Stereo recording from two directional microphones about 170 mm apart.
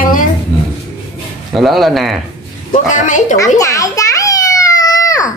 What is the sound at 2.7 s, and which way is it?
Speech, 50° left (ahead or behind).